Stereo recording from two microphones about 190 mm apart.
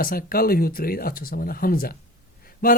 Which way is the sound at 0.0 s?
50° left (ahead or behind).